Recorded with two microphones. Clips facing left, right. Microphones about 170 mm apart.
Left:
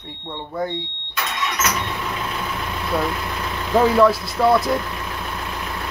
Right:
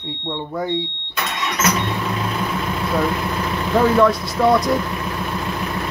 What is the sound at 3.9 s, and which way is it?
Speech, centre (ahead or behind).